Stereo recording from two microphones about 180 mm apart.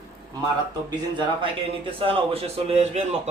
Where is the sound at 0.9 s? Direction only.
25° right (ahead or behind).